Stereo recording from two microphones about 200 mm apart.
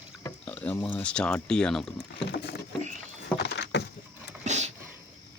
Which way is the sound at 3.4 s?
60° left (ahead or behind).